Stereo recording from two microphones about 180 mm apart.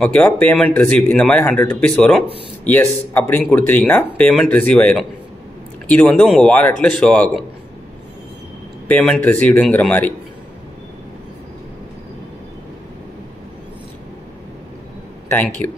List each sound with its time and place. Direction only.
0.0 s a man's voice: 5° left (ahead or behind)
8.8 s a man's voice: 10° left (ahead or behind)
15.2 s speech: 10° left (ahead or behind)